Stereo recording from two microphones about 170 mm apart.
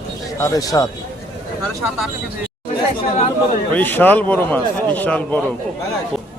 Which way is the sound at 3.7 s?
10° left (ahead or behind).